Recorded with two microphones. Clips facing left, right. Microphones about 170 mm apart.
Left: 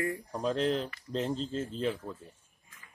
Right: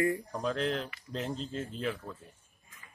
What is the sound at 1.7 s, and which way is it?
Speech, 35° left (ahead or behind).